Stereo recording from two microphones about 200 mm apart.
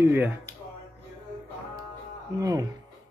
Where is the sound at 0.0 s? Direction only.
10° right (ahead or behind).